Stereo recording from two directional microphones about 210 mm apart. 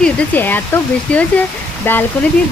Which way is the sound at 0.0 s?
5° left (ahead or behind).